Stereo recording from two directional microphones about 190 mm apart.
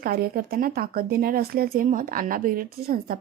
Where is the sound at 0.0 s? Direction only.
50° right (ahead or behind).